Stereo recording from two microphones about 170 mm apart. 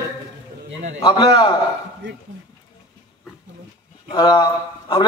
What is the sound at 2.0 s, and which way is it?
Speech, 90° right.